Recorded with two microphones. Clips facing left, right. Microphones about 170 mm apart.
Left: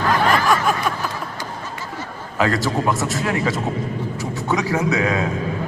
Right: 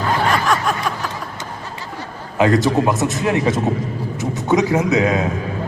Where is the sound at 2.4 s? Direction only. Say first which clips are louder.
Right 5 dB; 20° right (ahead or behind).